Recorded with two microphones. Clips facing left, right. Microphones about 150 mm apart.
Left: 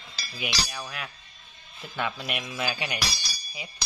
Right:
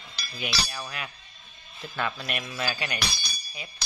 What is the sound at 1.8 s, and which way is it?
Speech, 10° left (ahead or behind).